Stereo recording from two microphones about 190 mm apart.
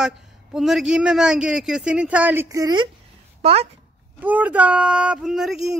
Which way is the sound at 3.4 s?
30° right (ahead or behind).